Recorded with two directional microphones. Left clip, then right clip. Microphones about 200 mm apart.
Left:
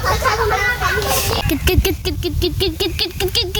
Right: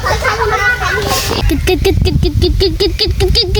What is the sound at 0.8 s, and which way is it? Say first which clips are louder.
Children playing: right 3 dB; centre (ahead or behind).